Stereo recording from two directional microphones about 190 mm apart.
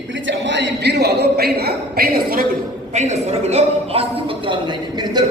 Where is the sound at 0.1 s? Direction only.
75° right (ahead or behind); by 2.5 s 50° right (ahead or behind).